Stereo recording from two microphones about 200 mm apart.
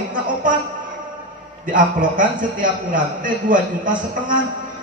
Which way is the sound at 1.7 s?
40° right (ahead or behind).